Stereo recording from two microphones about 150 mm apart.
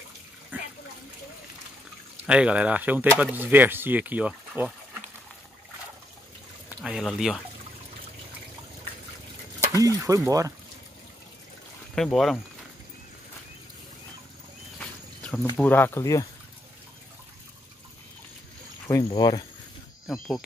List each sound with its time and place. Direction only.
0.5 s splash: 10° right (ahead or behind)
2.2 s speech: 5° right (ahead or behind)
6.8 s speech: 5° right (ahead or behind)
9.7 s speech: 20° right (ahead or behind)
11.9 s speech: 5° left (ahead or behind)
14.8 s a sound: 10° left (ahead or behind)
15.5 s speech: 10° left (ahead or behind)
18.9 s speech: 25° left (ahead or behind)